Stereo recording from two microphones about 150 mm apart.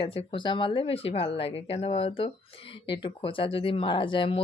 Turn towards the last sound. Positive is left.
turn(degrees=35)  # may be behind; listen again after turning